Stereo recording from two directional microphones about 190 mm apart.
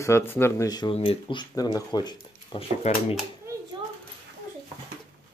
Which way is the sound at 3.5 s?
15° right (ahead or behind).